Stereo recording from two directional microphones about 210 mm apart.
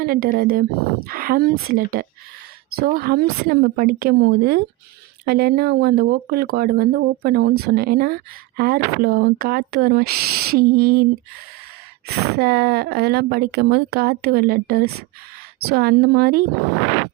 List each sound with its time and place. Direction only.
0.0 s speech: 45° right (ahead or behind)